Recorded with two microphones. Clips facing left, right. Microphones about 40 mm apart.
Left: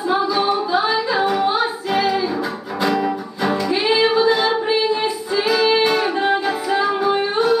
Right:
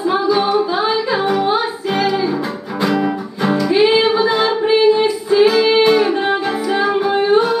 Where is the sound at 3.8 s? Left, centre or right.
Right.